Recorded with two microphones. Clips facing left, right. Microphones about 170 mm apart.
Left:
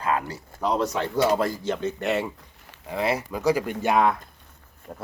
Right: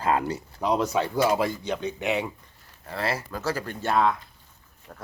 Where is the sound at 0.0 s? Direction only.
25° right (ahead or behind).